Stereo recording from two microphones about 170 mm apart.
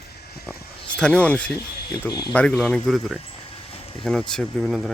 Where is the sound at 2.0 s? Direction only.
20° left (ahead or behind).